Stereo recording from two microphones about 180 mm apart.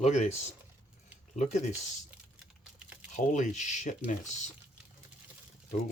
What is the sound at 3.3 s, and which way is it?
Speech, 40° left (ahead or behind).